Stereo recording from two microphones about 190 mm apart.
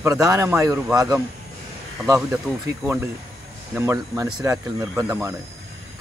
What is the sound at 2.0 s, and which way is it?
Speech, 15° right (ahead or behind).